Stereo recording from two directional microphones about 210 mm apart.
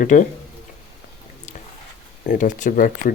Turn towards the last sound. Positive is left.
turn(degrees=40)  # may be behind; listen again after turning